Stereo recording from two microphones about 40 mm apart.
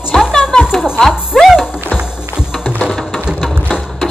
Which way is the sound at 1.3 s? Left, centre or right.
Centre.